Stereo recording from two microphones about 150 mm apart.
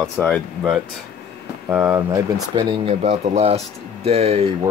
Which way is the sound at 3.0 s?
45° right (ahead or behind).